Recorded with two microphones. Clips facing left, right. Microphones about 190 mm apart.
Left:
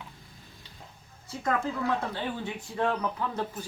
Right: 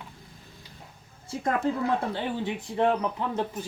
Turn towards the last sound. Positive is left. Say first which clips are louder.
# right 3 dB
turn(degrees=-20)  # may be behind; listen again after turning